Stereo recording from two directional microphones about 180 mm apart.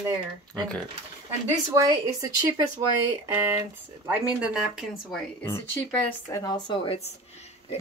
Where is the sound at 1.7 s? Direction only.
20° right (ahead or behind); by 5.2 s 5° right (ahead or behind).